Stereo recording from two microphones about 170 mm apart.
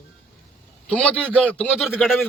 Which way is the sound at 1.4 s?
5° left (ahead or behind).